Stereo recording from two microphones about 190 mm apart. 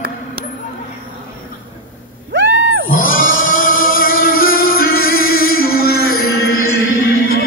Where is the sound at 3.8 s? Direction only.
45° left (ahead or behind).